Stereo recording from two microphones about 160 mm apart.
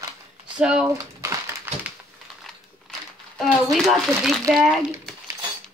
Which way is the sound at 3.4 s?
Centre (ahead or behind).